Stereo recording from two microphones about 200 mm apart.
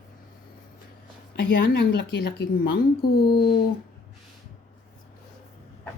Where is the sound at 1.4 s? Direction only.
60° left (ahead or behind).